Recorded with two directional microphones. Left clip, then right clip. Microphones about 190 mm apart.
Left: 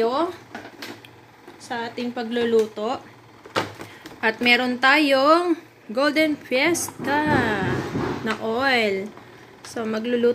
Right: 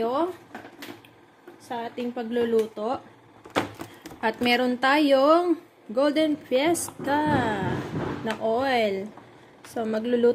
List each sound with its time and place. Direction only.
0.0 s a sound: 15° right (ahead or behind)
1.7 s speech: 15° right (ahead or behind)
4.2 s a woman's voice: 20° right (ahead or behind)